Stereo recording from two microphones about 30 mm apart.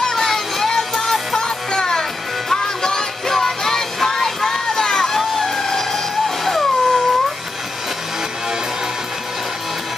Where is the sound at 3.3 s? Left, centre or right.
Centre.